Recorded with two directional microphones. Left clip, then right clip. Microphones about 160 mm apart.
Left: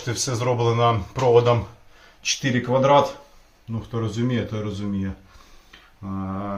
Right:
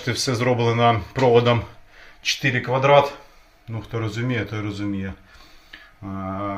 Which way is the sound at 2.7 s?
20° right (ahead or behind).